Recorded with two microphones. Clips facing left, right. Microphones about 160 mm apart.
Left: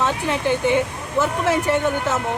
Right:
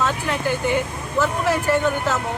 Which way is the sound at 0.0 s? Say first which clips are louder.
Left 1 dB; 20° left (ahead or behind).